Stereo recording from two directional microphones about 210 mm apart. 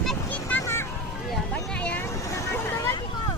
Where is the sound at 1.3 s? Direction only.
5° left (ahead or behind).